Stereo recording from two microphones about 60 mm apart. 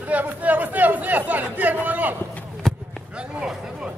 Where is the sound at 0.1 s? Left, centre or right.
Right.